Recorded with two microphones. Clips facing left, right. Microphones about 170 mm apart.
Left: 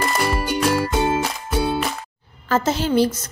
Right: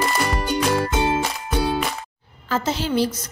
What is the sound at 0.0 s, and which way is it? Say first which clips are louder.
Music: left 1 dB; 5° left (ahead or behind).